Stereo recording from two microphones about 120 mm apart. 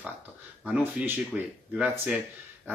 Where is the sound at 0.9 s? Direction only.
15° right (ahead or behind).